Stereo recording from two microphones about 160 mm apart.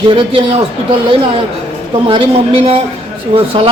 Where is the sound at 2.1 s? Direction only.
35° right (ahead or behind).